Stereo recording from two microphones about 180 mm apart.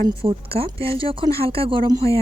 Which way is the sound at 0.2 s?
30° right (ahead or behind).